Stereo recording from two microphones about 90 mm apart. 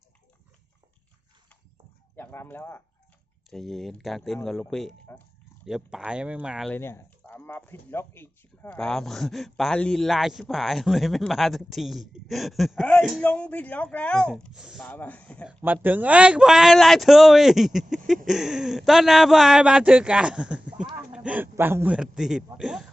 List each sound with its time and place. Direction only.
2.1 s speech: 25° left (ahead or behind)
3.5 s a man's voice: centre (ahead or behind)
6.7 s a sound: 25° left (ahead or behind)
8.8 s a man's voice: 5° left (ahead or behind)
13.2 s speech: 15° left (ahead or behind)
14.6 s speech: 5° right (ahead or behind)
14.8 s speech: 15° left (ahead or behind)
15.4 s a man's voice: 20° right (ahead or behind)
21.1 s a sound: 15° right (ahead or behind)
21.4 s a man's voice: 25° right (ahead or behind)
21.9 s a man's voice: 5° right (ahead or behind)